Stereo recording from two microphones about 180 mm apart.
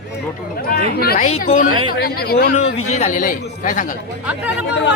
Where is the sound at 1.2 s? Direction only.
40° left (ahead or behind).